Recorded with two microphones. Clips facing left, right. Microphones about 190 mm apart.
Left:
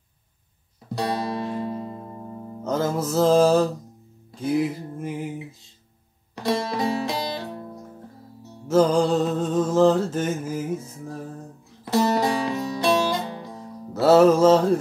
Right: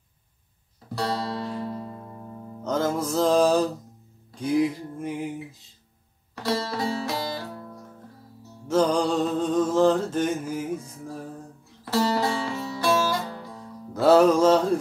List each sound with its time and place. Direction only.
0.9 s guitar: 20° left (ahead or behind)
2.6 s music: 5° left (ahead or behind)
6.4 s music: 20° left (ahead or behind)
8.6 s music: 5° left (ahead or behind)
11.8 s music: 20° left (ahead or behind)
13.9 s music: 5° left (ahead or behind)